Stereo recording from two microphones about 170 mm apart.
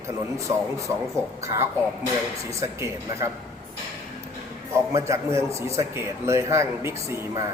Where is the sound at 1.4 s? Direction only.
15° right (ahead or behind).